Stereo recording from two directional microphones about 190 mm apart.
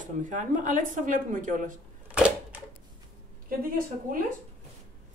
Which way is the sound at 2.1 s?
5° right (ahead or behind).